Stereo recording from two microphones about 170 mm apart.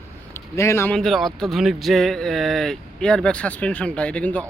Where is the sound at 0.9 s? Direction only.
Centre (ahead or behind).